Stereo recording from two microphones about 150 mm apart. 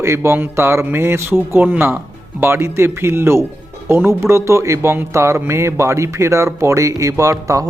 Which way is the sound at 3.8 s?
15° right (ahead or behind).